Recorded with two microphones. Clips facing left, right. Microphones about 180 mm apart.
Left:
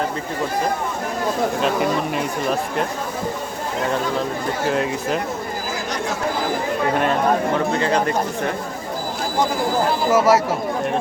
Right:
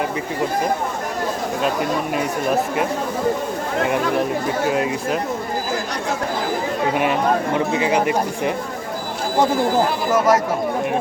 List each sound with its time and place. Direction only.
1.6 s speech: centre (ahead or behind)
3.9 s speech: 15° right (ahead or behind)
4.6 s speech: 5° right (ahead or behind)
6.9 s speech: 10° right (ahead or behind)
10.1 s speech: 10° left (ahead or behind)